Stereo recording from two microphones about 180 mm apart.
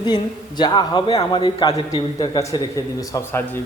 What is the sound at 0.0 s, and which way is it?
A man's voice, 25° left (ahead or behind).